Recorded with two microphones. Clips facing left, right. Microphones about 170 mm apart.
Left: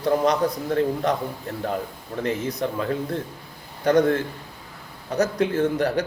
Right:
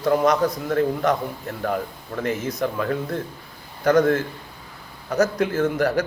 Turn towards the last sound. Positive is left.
turn(degrees=30)  # may be behind; listen again after turning